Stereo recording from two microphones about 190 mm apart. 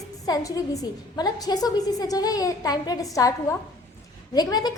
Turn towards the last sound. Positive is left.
turn(degrees=20)  # may be behind; listen again after turning